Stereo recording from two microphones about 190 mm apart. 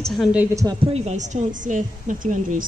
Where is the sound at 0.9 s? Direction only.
35° right (ahead or behind).